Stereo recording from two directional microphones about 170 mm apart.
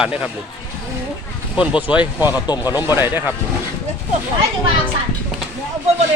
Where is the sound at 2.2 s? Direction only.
25° left (ahead or behind).